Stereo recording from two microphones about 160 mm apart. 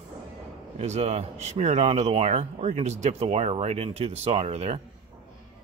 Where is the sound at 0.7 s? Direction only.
40° right (ahead or behind).